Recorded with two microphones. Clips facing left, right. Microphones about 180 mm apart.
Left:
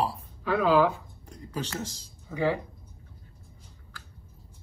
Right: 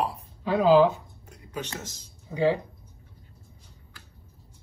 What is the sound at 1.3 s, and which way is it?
Speech, 35° left (ahead or behind).